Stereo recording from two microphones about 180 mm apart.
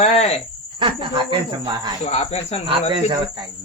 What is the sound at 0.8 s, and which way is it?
Speech, 25° right (ahead or behind).